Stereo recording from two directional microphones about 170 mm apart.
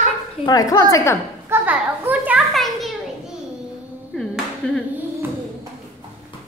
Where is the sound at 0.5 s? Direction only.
20° left (ahead or behind).